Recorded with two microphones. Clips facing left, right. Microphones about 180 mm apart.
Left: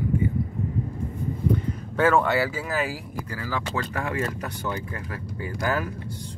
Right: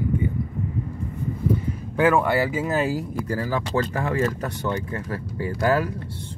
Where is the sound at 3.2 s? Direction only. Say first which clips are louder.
Right 2 dB; 35° right (ahead or behind).